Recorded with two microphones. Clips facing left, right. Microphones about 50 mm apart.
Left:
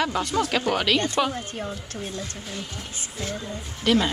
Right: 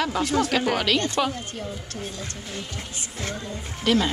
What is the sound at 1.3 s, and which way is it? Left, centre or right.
Speech, left.